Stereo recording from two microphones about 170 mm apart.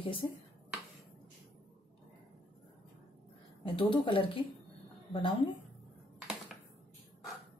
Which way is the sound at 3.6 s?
30° left (ahead or behind).